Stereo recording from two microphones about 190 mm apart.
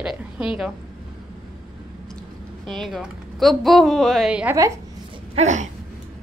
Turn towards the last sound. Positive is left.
turn(degrees=-40)  # may be behind; listen again after turning